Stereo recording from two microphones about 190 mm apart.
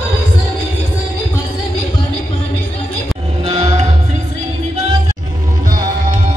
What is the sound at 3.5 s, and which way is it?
Music, 35° right (ahead or behind).